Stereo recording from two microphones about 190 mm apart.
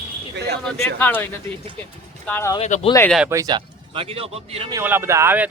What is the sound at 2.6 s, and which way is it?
Speech, 35° left (ahead or behind).